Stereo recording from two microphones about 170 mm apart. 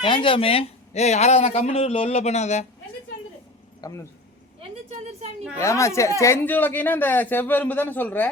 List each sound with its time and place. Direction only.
0.0 s a man's voice: 30° left (ahead or behind)
3.8 s speech: 20° left (ahead or behind)
4.9 s a woman's voice: 40° right (ahead or behind)
5.5 s speech: 15° left (ahead or behind)